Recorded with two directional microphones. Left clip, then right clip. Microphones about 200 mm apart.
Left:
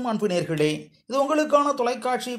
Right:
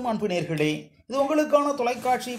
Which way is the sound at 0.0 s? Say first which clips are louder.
Left 2 dB; 35° left (ahead or behind).